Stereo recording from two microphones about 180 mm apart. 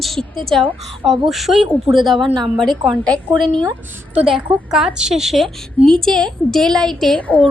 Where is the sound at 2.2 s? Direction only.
25° right (ahead or behind).